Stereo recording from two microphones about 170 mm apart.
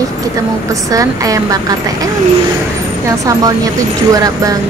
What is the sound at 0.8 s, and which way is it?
Speech, 20° right (ahead or behind).